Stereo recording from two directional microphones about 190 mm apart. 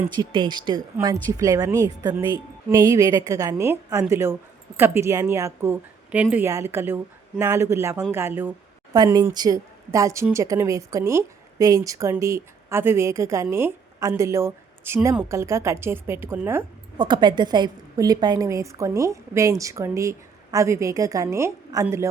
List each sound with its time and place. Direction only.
0.2 s a woman's voice: 25° right (ahead or behind)
17.0 s a woman's voice: 25° right (ahead or behind)